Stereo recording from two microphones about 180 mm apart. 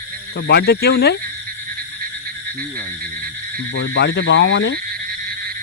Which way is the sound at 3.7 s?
80° left.